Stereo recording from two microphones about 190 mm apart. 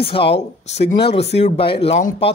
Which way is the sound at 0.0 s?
30° left (ahead or behind).